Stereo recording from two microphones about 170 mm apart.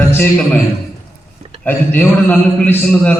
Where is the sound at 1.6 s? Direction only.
10° left (ahead or behind).